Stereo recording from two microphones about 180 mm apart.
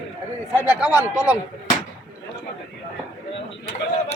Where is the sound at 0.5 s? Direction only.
5° right (ahead or behind).